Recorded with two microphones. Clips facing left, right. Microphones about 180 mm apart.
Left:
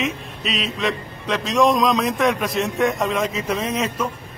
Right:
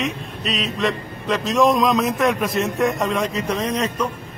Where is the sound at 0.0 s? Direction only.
Centre (ahead or behind).